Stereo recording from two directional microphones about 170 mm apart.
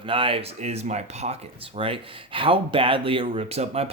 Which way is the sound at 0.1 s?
30° right (ahead or behind).